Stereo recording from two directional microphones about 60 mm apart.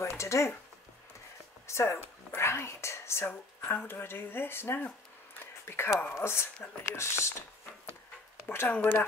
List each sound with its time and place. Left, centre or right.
0.0 s speech: left
1.7 s speech: left
5.4 s a sound: left
6.1 s speech: left
8.5 s speech: left